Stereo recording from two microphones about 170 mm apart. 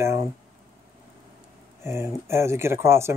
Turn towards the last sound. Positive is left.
turn(degrees=-15)  # may be behind; listen again after turning